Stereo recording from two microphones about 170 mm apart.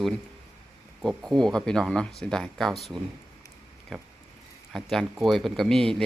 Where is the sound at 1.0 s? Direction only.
Centre (ahead or behind).